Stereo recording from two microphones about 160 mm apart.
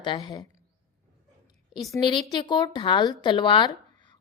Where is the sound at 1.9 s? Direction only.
30° left (ahead or behind).